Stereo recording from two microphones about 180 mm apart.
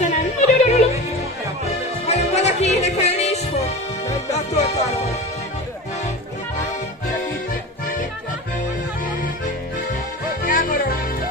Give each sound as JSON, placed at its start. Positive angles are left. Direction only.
{"t": 0.0, "sound": "yodeling", "side_deg": 40}
{"t": 2.0, "sound": "music", "side_deg": 40}
{"t": 10.4, "sound": "music", "side_deg": 50}